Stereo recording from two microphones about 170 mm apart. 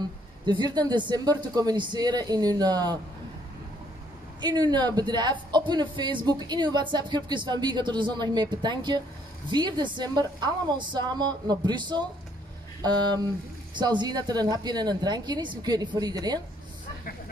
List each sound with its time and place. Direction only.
0.5 s speech: 25° right (ahead or behind)
4.4 s speech: 25° right (ahead or behind)
13.7 s speech: 25° right (ahead or behind)